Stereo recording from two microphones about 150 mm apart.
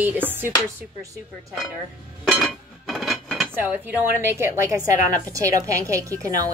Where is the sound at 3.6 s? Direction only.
10° right (ahead or behind).